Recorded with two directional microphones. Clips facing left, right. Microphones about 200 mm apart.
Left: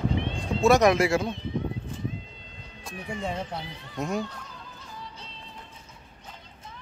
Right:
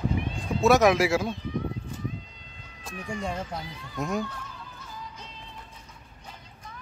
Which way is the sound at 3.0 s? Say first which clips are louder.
Even; 25° left (ahead or behind).